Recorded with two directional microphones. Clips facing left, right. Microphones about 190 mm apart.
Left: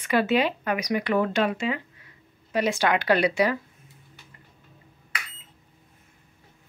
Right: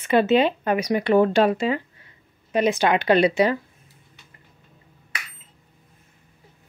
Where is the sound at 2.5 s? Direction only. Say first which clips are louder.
Right 4 dB; 20° right (ahead or behind).